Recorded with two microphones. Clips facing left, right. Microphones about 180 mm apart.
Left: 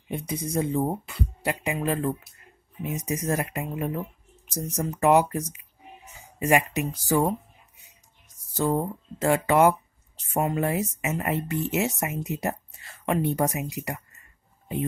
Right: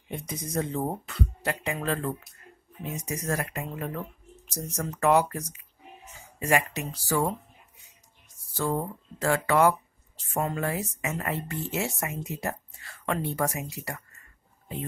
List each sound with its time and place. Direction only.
0.5 s speech: 10° left (ahead or behind)
8.5 s speech: 20° left (ahead or behind)